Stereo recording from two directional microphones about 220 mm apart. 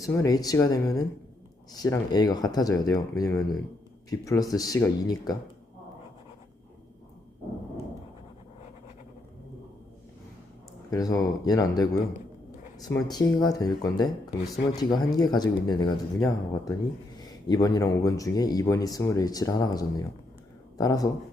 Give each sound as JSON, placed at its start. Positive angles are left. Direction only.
{"t": 0.0, "sound": "speech", "side_deg": 15}
{"t": 10.9, "sound": "speech", "side_deg": 15}